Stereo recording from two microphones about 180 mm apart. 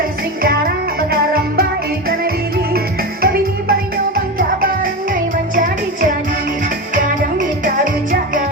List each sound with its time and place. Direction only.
0.4 s music: 55° right (ahead or behind)
2.7 s music: 55° right (ahead or behind)